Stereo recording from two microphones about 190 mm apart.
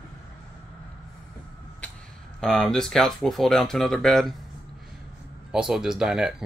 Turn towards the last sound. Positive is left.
turn(degrees=-5)  # may be behind; listen again after turning